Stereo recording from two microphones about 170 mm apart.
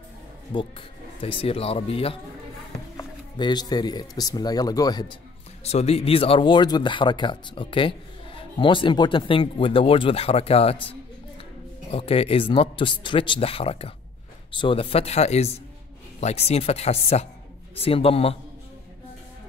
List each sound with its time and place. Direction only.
0.5 s speech: 30° left (ahead or behind)
5.6 s speech: 40° left (ahead or behind)
11.9 s speech: 35° left (ahead or behind)